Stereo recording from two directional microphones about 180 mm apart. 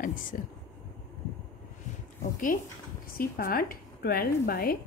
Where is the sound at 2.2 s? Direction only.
50° left (ahead or behind).